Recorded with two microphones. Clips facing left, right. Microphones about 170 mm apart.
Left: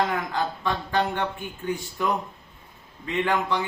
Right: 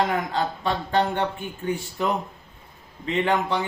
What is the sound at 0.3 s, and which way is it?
Speech, 25° right (ahead or behind).